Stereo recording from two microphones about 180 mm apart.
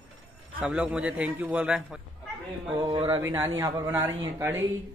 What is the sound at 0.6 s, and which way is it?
A man's voice, 5° right (ahead or behind).